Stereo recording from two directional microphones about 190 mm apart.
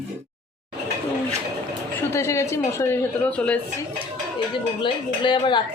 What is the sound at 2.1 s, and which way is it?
Speech, 15° left (ahead or behind).